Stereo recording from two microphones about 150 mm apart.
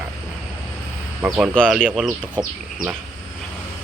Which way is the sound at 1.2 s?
15° right (ahead or behind).